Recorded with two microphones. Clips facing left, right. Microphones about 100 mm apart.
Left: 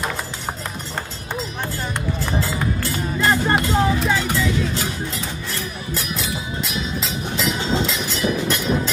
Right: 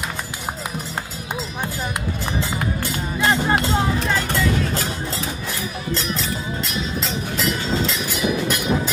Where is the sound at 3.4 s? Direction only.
Centre (ahead or behind).